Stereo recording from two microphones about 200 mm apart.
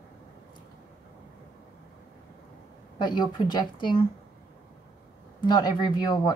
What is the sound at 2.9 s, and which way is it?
A woman's voice, 20° left (ahead or behind).